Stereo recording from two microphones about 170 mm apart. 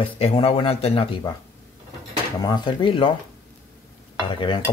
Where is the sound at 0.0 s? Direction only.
35° left (ahead or behind).